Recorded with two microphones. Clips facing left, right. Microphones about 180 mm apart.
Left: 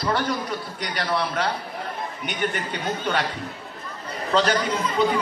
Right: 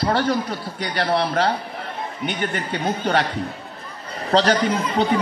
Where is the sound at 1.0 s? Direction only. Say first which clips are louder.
Right 5 dB; 60° right (ahead or behind).